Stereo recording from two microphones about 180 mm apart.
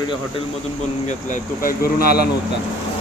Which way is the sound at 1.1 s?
45° left (ahead or behind).